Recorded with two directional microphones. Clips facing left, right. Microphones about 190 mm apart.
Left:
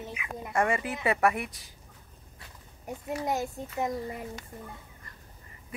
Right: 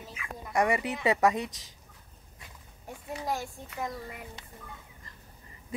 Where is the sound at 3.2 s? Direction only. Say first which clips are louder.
Left 2 dB; 20° left (ahead or behind).